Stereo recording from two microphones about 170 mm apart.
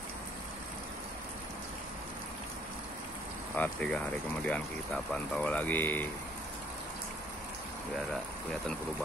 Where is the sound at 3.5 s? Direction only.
10° left (ahead or behind).